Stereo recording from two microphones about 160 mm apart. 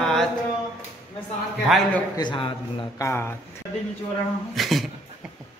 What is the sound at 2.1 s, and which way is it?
Speech, 30° left (ahead or behind).